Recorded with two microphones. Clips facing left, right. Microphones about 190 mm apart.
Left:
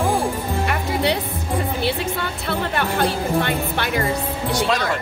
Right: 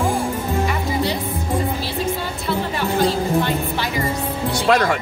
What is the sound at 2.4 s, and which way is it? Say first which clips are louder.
Music: right 1 dB; 60° left (ahead or behind).